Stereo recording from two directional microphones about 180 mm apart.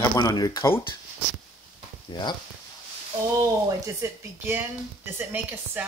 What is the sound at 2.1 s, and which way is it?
Speech, 25° left (ahead or behind).